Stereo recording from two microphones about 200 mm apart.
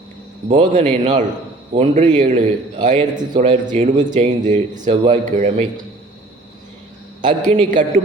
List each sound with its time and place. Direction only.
0.4 s a man's voice: 30° right (ahead or behind)
7.2 s a man's voice: 40° right (ahead or behind)